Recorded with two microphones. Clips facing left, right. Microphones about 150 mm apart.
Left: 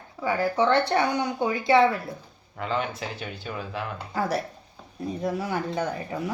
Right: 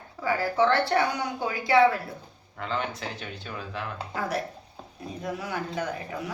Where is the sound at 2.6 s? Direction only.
5° left (ahead or behind).